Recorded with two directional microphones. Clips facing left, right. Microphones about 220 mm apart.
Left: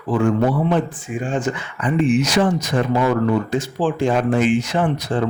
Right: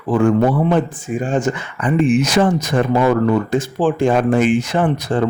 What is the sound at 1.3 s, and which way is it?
Speech, 45° right (ahead or behind).